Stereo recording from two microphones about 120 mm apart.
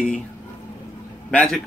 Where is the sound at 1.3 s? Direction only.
5° left (ahead or behind).